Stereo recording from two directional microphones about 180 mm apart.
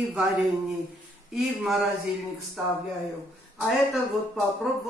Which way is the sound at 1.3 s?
Centre (ahead or behind).